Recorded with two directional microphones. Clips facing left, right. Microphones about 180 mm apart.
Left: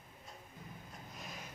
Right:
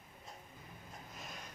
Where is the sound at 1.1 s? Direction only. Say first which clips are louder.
Left 1 dB; centre (ahead or behind).